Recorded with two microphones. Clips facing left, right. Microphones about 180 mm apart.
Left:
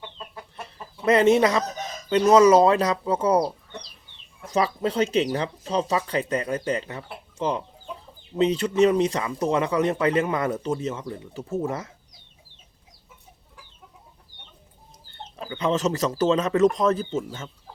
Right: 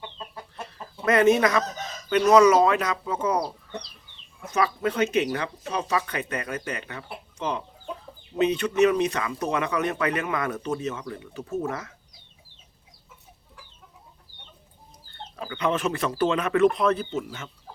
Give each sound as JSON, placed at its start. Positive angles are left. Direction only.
{"t": 1.0, "sound": "speech", "side_deg": 25}
{"t": 4.4, "sound": "speech", "side_deg": 30}
{"t": 15.4, "sound": "speech", "side_deg": 25}